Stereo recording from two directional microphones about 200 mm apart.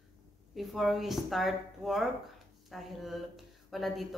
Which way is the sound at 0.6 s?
Centre (ahead or behind).